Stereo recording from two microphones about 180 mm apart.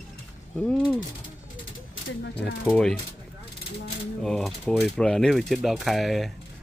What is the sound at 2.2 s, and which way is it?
Mechanisms, 75° left (ahead or behind).